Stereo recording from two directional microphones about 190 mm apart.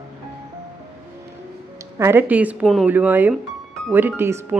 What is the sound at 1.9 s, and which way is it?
Speech, 15° right (ahead or behind).